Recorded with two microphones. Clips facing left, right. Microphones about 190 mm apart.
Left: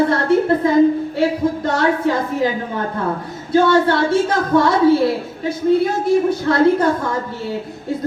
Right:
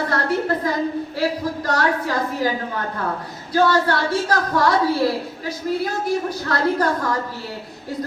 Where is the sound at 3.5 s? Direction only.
25° left (ahead or behind).